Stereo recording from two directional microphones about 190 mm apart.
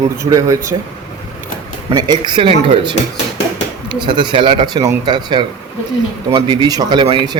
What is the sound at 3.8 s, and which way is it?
Speech, 25° right (ahead or behind).